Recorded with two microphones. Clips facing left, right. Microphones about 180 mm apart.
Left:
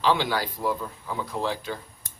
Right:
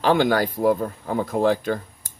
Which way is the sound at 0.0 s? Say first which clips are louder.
Right 6 dB; 50° right (ahead or behind).